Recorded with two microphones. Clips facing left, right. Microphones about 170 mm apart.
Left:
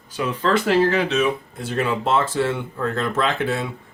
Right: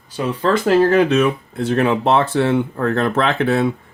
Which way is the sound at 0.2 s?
40° right (ahead or behind).